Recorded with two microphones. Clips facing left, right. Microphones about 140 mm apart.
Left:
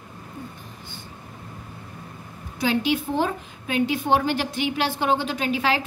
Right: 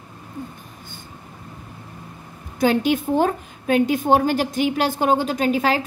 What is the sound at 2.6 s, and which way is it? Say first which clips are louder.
A woman's voice: right 4 dB; 45° right (ahead or behind).